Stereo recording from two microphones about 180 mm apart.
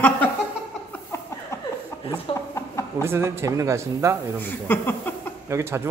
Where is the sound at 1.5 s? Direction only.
15° left (ahead or behind).